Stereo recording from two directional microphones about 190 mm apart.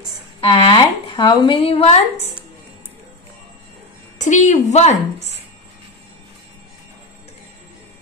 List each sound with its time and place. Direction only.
0.4 s a woman's voice: 25° left (ahead or behind)
4.2 s a woman's voice: 40° left (ahead or behind)